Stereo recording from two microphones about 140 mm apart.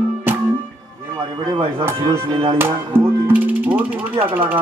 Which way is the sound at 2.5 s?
15° right (ahead or behind).